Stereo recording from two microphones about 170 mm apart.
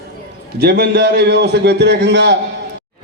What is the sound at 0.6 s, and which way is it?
A man's voice, 65° right (ahead or behind).